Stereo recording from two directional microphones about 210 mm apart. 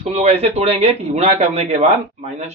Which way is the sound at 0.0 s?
30° right (ahead or behind).